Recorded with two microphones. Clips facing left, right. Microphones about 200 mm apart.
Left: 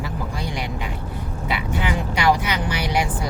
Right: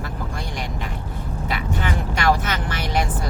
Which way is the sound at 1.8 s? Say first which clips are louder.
Left 3 dB; 15° left (ahead or behind).